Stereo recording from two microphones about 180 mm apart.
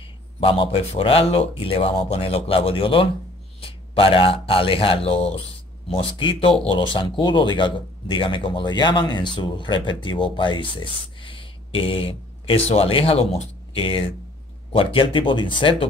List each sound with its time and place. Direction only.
0.4 s speech: 30° left (ahead or behind)